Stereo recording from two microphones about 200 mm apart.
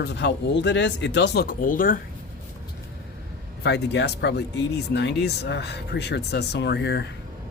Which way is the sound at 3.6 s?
60° left (ahead or behind).